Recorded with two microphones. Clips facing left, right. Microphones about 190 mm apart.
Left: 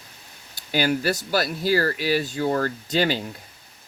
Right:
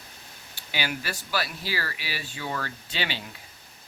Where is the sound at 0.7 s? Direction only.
45° left (ahead or behind).